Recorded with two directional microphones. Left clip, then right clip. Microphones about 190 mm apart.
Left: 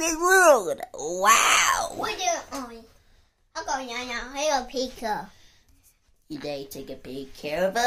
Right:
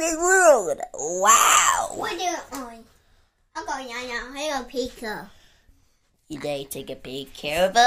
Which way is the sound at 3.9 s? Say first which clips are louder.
Right 1 dB; 5° left (ahead or behind).